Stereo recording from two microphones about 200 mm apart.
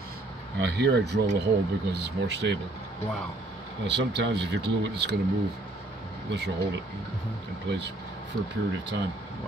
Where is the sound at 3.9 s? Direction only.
60° right (ahead or behind).